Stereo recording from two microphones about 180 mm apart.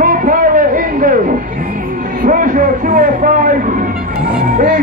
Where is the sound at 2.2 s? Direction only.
45° right (ahead or behind).